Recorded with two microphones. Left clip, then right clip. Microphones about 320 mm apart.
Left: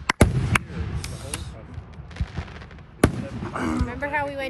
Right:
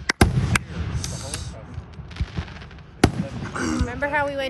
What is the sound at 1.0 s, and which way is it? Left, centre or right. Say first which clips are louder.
Mechanisms: right 4 dB; left.